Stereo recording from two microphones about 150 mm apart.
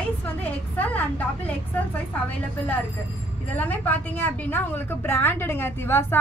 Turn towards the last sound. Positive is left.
turn(degrees=15)  # may be behind; listen again after turning